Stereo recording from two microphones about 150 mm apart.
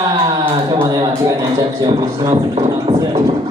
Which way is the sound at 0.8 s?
25° right (ahead or behind).